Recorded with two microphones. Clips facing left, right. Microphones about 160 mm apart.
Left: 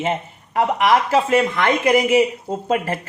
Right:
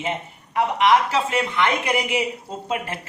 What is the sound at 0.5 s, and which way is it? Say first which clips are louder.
Speech: left 1 dB; 45° left (ahead or behind).